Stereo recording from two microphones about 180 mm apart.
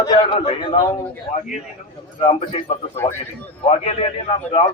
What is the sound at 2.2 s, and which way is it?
A man's voice, 30° left (ahead or behind).